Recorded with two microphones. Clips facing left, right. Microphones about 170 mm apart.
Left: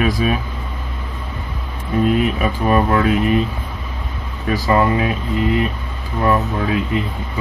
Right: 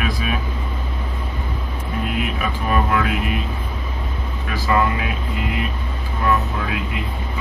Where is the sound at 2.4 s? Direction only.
35° left (ahead or behind).